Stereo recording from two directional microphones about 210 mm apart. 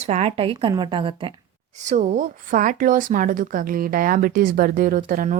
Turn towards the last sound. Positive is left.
turn(degrees=-40)  # may be behind; listen again after turning